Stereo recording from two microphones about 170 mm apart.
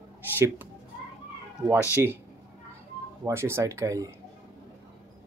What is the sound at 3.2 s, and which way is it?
Speech, 15° right (ahead or behind).